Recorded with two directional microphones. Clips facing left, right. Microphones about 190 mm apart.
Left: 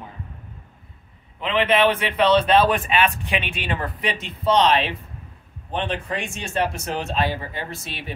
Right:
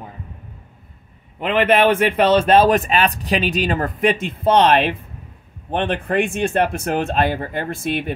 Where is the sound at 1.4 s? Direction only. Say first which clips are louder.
Right 4 dB; 50° right (ahead or behind).